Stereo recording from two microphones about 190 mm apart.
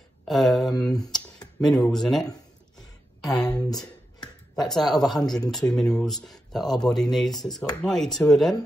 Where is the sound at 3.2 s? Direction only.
20° left (ahead or behind).